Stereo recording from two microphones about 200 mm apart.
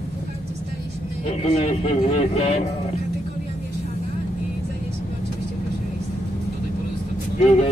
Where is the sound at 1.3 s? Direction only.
30° left (ahead or behind).